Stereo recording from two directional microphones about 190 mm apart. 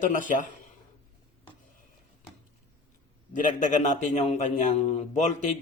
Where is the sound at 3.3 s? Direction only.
40° left (ahead or behind).